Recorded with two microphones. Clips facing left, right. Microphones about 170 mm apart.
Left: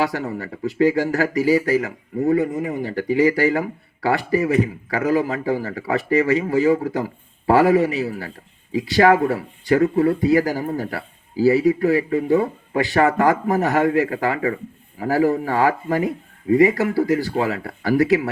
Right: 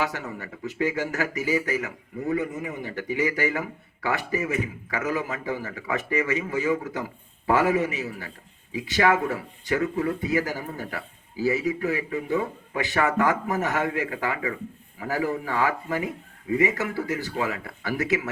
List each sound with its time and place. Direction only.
0.0 s speech: 40° left (ahead or behind)